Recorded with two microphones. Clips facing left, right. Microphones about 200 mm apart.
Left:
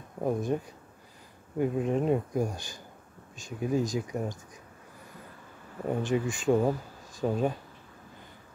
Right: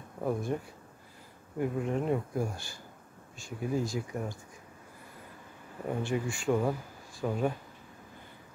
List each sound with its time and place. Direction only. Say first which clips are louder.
0.2 s speech: left 3 dB; 20° left (ahead or behind)
1.6 s speech: left 4 dB; 20° left (ahead or behind)
5.9 s speech: left 4 dB; 20° left (ahead or behind)